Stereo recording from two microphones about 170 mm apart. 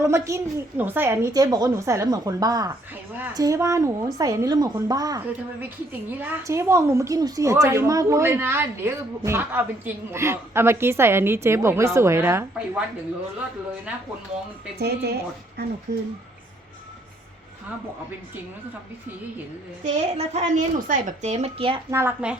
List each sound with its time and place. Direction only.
0.0 s a woman's voice: 15° right (ahead or behind)
5.5 s a woman's voice: 10° right (ahead or behind)
14.8 s a woman's voice: 75° right (ahead or behind)
19.8 s a woman's voice: 40° right (ahead or behind)
21.8 s a woman's voice: 15° right (ahead or behind)